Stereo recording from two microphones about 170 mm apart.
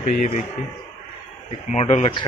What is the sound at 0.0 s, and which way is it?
Speech, 45° left (ahead or behind).